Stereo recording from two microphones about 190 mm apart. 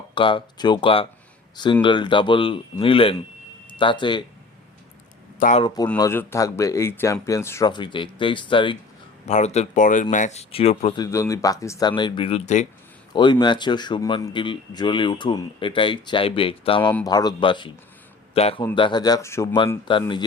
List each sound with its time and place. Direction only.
0.1 s a man's voice: 25° left (ahead or behind)
5.4 s speech: 40° left (ahead or behind)
5.6 s a man's voice: 20° left (ahead or behind)
9.2 s speech: 35° left (ahead or behind)
10.9 s a man's voice: 15° left (ahead or behind); by 12.6 s 35° left (ahead or behind)
13.1 s a man's voice: 25° left (ahead or behind)
19.9 s a man's voice: 25° left (ahead or behind)